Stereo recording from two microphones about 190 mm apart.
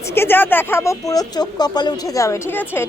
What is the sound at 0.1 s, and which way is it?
A woman's voice, 10° left (ahead or behind).